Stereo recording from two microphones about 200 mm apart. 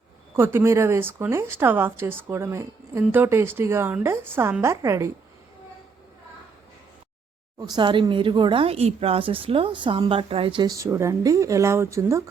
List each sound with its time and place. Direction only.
0.3 s a woman's voice: 10° right (ahead or behind)
7.6 s speech: 20° right (ahead or behind)